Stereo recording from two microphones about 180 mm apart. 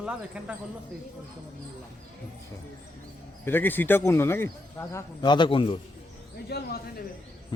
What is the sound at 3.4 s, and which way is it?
Speech, 10° left (ahead or behind).